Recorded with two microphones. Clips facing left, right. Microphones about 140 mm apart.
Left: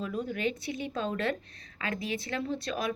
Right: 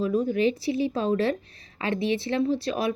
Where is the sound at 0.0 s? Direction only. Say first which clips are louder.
Right 9 dB; 35° right (ahead or behind).